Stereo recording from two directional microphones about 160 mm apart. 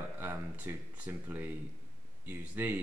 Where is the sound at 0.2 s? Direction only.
10° right (ahead or behind).